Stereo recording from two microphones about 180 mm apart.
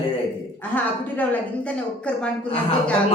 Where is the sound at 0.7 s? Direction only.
10° left (ahead or behind).